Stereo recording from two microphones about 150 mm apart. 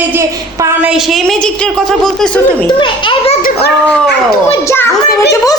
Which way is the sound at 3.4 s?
70° left (ahead or behind).